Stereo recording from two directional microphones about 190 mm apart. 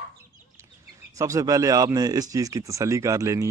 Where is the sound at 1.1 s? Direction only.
15° right (ahead or behind).